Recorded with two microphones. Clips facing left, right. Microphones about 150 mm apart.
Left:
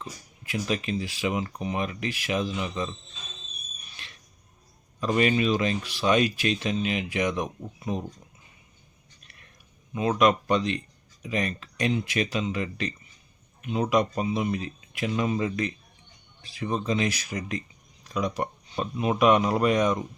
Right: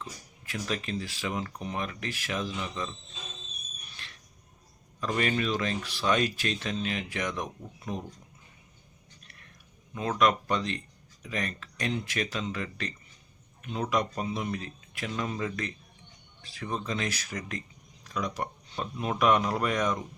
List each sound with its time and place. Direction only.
0.0 s speech: 15° left (ahead or behind)
4.0 s a sound: 15° left (ahead or behind)
4.9 s speech: 15° left (ahead or behind)
9.9 s speech: 15° left (ahead or behind)